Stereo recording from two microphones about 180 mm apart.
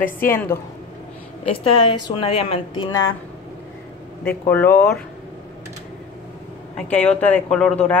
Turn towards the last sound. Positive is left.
turn(degrees=5)  # may be behind; listen again after turning